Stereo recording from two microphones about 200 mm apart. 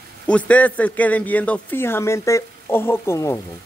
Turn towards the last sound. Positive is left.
turn(degrees=15)  # may be behind; listen again after turning